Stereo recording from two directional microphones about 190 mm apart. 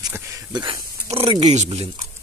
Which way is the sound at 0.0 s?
15° right (ahead or behind).